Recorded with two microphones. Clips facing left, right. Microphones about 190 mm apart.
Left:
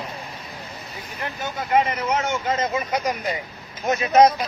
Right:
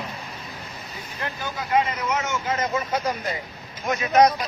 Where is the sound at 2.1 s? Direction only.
25° left (ahead or behind).